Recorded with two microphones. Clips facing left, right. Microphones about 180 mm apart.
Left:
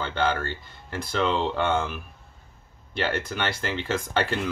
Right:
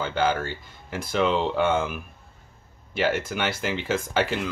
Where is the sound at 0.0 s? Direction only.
5° right (ahead or behind).